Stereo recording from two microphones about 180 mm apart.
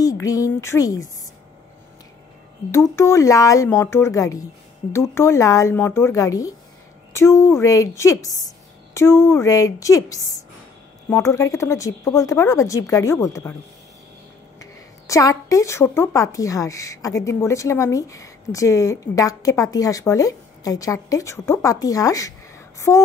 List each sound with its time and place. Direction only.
0.0 s speech: 20° left (ahead or behind)
3.0 s speech: 15° left (ahead or behind)
14.6 s speech: 20° left (ahead or behind)